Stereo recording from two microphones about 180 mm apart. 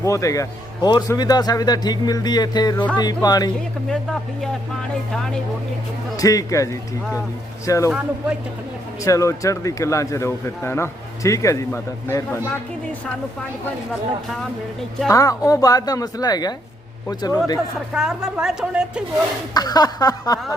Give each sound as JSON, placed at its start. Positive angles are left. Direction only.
{"t": 0.0, "sound": "a man's voice", "side_deg": 15}
{"t": 3.8, "sound": "a woman's voice", "side_deg": 0}
{"t": 6.1, "sound": "a man's voice", "side_deg": 20}
{"t": 7.9, "sound": "speech", "side_deg": -5}
{"t": 9.0, "sound": "speech", "side_deg": 15}
{"t": 15.1, "sound": "a man's voice", "side_deg": 20}
{"t": 17.9, "sound": "a woman's voice", "side_deg": -5}
{"t": 19.5, "sound": "a man's voice", "side_deg": 20}